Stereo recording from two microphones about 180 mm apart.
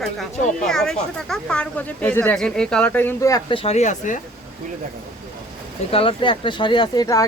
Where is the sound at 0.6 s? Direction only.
Centre (ahead or behind).